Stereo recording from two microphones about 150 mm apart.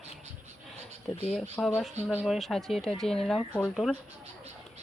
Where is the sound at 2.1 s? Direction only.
10° right (ahead or behind).